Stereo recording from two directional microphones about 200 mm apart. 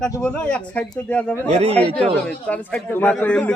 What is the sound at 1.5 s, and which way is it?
Speech, 30° right (ahead or behind).